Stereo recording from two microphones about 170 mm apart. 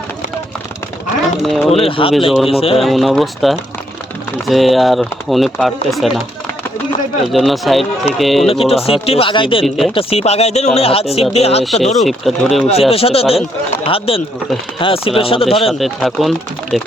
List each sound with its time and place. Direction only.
1.4 s speech: centre (ahead or behind)
1.7 s speech: 35° left (ahead or behind)
2.7 s speech: centre (ahead or behind)
7.3 s speech: centre (ahead or behind)
8.4 s speech: 35° left (ahead or behind)
9.6 s speech: centre (ahead or behind)
9.9 s speech: 35° left (ahead or behind)
11.6 s speech: centre (ahead or behind)
12.9 s speech: 35° left (ahead or behind)
15.8 s speech: centre (ahead or behind)